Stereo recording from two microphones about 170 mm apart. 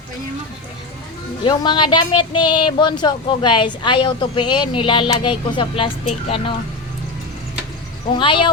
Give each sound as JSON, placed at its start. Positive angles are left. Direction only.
{"t": 1.5, "sound": "speech", "side_deg": 25}
{"t": 8.1, "sound": "speech", "side_deg": 30}